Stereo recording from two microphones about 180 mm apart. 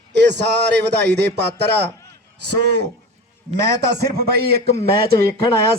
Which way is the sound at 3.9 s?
60° right (ahead or behind).